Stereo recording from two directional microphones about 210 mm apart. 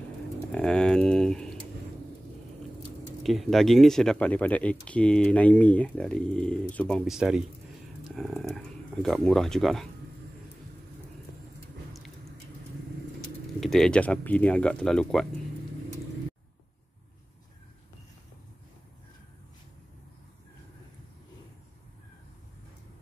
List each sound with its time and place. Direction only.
0.5 s speech: 5° left (ahead or behind)
3.2 s speech: centre (ahead or behind)
13.6 s speech: centre (ahead or behind)